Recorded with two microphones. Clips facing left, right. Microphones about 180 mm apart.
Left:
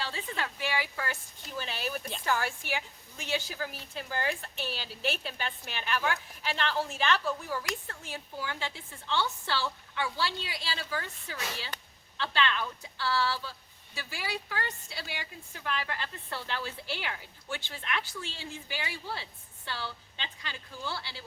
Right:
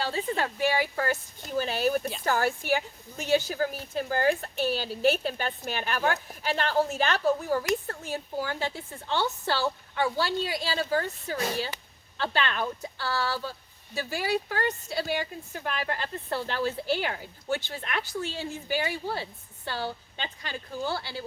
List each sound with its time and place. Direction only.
0.0 s speech: 40° right (ahead or behind)